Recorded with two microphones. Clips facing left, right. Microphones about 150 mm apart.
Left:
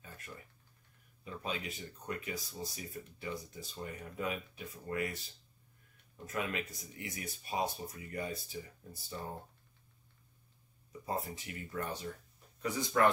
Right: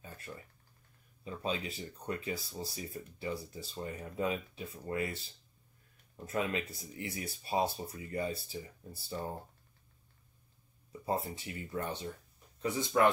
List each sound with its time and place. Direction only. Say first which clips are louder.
1.2 s speech: right 3 dB; 30° right (ahead or behind)
10.9 s speech: right 3 dB; 30° right (ahead or behind)